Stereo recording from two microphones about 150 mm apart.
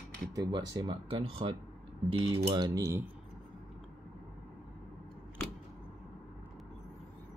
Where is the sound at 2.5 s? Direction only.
25° right (ahead or behind).